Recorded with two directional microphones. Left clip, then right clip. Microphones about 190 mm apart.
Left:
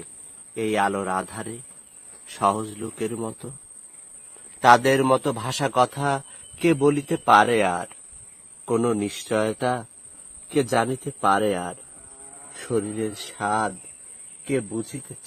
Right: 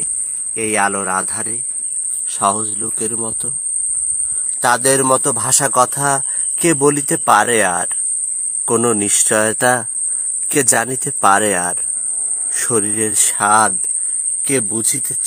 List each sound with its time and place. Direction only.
0.5 s speech: 30° right (ahead or behind)
4.6 s speech: 15° right (ahead or behind); by 13.7 s 45° right (ahead or behind)
14.4 s speech: 65° right (ahead or behind)